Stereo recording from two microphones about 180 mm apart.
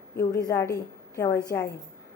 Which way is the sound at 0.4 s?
15° left (ahead or behind).